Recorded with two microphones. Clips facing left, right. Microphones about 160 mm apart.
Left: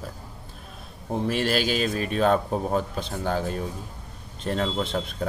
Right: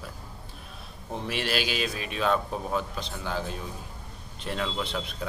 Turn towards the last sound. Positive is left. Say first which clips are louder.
# left 5 dB
turn(degrees=45)  # may be behind; listen again after turning